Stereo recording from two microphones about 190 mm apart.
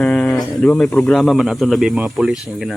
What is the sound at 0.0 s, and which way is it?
Speech, 5° left (ahead or behind).